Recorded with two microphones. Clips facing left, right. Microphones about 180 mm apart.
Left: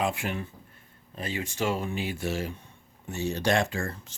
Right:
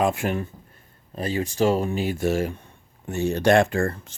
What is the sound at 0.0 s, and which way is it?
Speech, 45° right (ahead or behind).